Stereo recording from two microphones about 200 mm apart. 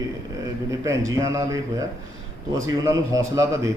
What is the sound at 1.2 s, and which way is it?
A man's voice, 15° right (ahead or behind).